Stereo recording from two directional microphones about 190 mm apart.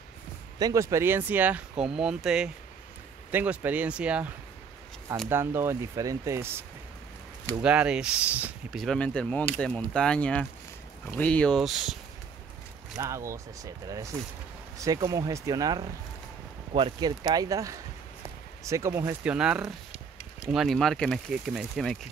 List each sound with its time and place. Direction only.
0.6 s speech: 20° right (ahead or behind)
5.3 s speech: 10° right (ahead or behind)
7.6 s speech: 5° right (ahead or behind)
12.9 s speech: 15° right (ahead or behind)
14.8 s speech: 20° right (ahead or behind); by 21.9 s centre (ahead or behind)